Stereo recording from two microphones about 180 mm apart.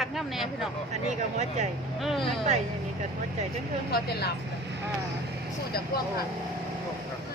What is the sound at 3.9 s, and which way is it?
Speech, 65° left (ahead or behind).